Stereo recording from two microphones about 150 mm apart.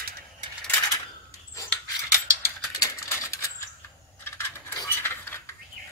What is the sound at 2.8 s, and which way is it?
Mechanisms, 20° left (ahead or behind).